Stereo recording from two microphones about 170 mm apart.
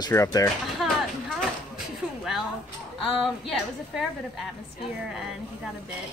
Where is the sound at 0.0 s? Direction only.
20° left (ahead or behind).